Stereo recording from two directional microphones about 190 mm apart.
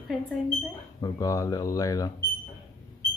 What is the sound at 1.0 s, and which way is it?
Speech, 20° left (ahead or behind).